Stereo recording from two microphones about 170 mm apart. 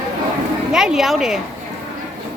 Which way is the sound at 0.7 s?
5° right (ahead or behind).